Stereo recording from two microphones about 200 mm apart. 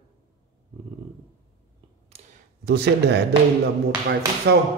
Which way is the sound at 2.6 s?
55° right (ahead or behind).